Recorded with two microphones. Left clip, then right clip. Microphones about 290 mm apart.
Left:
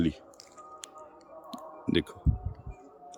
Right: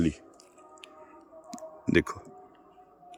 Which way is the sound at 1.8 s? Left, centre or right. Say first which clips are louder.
Right 4 dB; centre.